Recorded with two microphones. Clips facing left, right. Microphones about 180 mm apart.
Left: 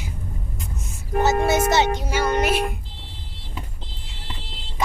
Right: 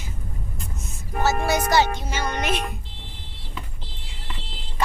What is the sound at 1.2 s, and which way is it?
Speech, 20° left (ahead or behind).